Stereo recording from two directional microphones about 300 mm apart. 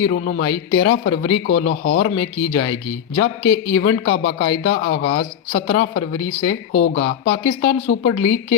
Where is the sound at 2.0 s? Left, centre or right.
Left.